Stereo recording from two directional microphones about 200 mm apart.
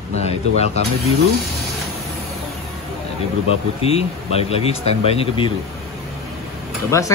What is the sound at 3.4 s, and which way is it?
Speech, 30° left (ahead or behind).